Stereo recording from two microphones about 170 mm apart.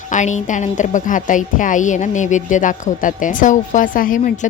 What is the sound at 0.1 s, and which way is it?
A woman's voice, 45° left (ahead or behind).